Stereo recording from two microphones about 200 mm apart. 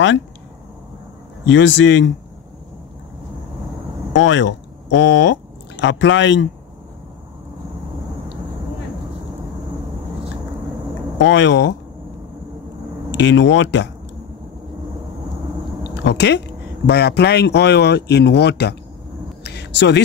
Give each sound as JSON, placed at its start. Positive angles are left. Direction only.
{"t": 1.5, "sound": "speech", "side_deg": 70}
{"t": 4.1, "sound": "speech", "side_deg": 70}
{"t": 11.1, "sound": "speech", "side_deg": 65}
{"t": 13.2, "sound": "speech", "side_deg": 65}
{"t": 15.9, "sound": "speech", "side_deg": 60}
{"t": 19.4, "sound": "a sound", "side_deg": 60}